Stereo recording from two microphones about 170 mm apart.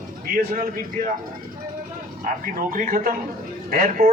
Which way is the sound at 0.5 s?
50° right (ahead or behind).